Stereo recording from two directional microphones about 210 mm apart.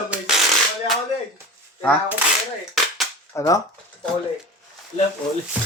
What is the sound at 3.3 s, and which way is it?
Speech, 15° left (ahead or behind).